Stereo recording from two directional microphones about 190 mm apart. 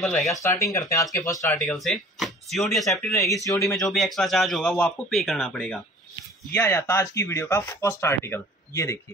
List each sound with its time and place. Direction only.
0.0 s speech: centre (ahead or behind)
0.7 s speech: 15° left (ahead or behind)
1.6 s speech: centre (ahead or behind)
3.4 s speech: 15° left (ahead or behind)
3.7 s speech: centre (ahead or behind)
6.5 s speech: 15° left (ahead or behind)